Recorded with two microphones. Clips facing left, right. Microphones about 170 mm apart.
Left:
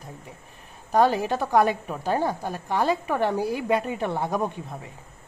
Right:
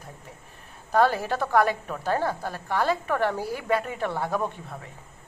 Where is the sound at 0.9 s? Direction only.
15° left (ahead or behind).